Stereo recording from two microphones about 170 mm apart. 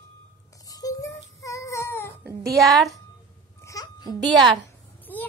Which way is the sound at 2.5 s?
Centre (ahead or behind).